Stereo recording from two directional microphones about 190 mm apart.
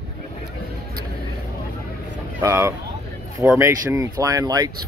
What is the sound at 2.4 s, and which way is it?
Speech, 15° right (ahead or behind).